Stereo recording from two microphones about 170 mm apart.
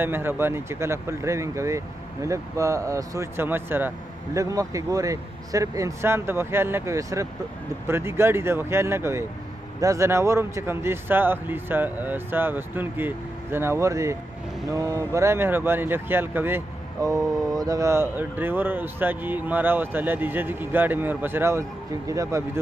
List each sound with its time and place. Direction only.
0.0 s speech: 15° right (ahead or behind)